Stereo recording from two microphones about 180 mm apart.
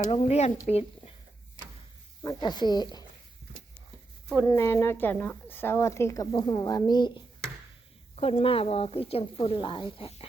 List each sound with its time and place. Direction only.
0.1 s speech: 35° left (ahead or behind)
2.2 s speech: 25° left (ahead or behind)
4.4 s speech: 15° left (ahead or behind); by 10.2 s 35° left (ahead or behind)